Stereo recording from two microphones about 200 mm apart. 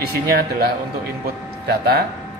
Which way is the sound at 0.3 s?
50° right (ahead or behind).